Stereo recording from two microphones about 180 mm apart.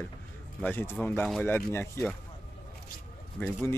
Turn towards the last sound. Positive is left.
turn(degrees=15)  # may be behind; listen again after turning